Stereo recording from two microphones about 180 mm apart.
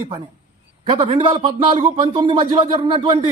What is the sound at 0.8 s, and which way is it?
Speech, 30° right (ahead or behind).